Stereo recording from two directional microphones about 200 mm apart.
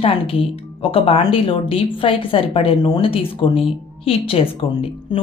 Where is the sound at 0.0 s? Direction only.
30° left (ahead or behind).